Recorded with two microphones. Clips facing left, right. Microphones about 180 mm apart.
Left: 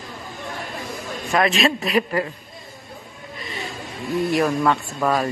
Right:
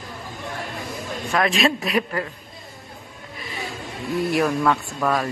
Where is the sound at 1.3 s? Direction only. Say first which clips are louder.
Left 1 dB; centre (ahead or behind).